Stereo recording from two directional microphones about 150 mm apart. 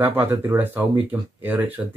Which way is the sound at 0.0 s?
15° right (ahead or behind).